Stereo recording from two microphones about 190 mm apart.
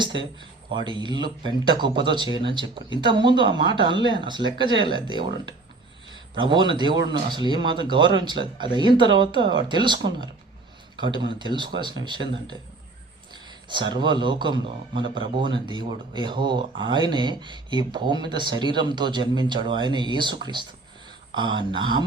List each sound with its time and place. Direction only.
0.0 s speech: 25° right (ahead or behind)
11.3 s speech: 25° right (ahead or behind)
13.3 s speech: 25° right (ahead or behind)